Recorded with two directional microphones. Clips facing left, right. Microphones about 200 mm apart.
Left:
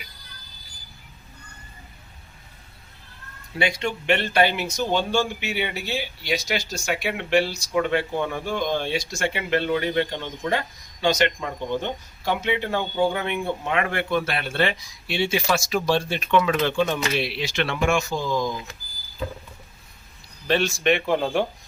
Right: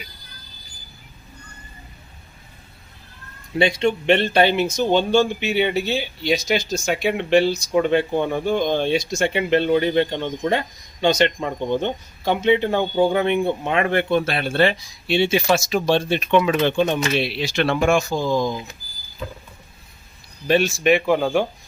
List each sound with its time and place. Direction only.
3.6 s speech: 25° right (ahead or behind)
20.5 s speech: 10° right (ahead or behind)